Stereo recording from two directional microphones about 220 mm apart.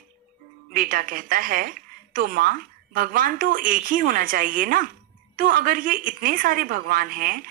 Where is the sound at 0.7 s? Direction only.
40° right (ahead or behind).